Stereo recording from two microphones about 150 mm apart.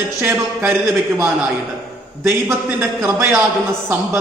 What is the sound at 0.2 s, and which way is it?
Speech, 15° right (ahead or behind).